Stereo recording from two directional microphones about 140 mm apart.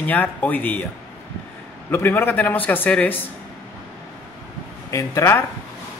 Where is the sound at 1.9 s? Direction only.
15° left (ahead or behind).